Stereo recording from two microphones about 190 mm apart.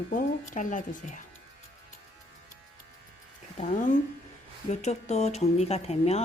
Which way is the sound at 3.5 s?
35° left (ahead or behind).